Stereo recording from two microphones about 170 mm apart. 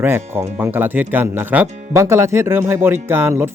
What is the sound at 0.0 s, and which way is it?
Speech, 15° right (ahead or behind).